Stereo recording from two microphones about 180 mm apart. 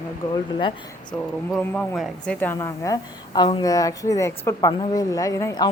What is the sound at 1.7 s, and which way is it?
A woman's voice, 5° left (ahead or behind).